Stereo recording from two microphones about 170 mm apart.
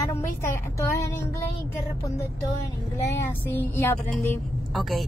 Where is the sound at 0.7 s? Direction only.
15° left (ahead or behind).